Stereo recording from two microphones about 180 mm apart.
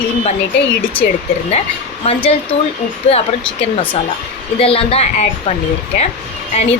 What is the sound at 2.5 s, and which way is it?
Speech, 35° left (ahead or behind).